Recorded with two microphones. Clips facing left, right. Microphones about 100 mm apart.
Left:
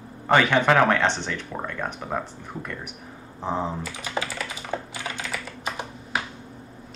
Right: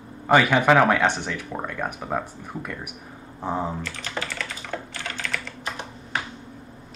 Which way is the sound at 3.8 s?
10° left (ahead or behind).